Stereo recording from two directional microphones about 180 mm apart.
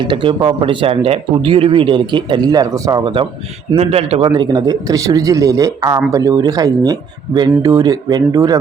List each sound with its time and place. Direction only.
0.0 s a man's voice: 25° right (ahead or behind)
4.3 s speech: 20° right (ahead or behind)